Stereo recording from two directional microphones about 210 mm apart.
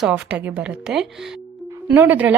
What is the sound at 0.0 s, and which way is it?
A woman's voice, 5° right (ahead or behind).